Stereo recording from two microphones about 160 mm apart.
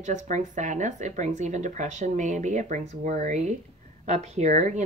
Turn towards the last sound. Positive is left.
turn(degrees=-45)  # may be behind; listen again after turning